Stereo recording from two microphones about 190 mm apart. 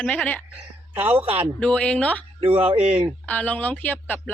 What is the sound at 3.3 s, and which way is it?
Speech, 10° left (ahead or behind).